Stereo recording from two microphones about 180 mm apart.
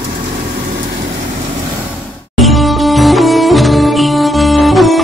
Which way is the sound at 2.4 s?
Centre (ahead or behind).